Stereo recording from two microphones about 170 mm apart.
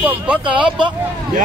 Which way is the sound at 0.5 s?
30° right (ahead or behind).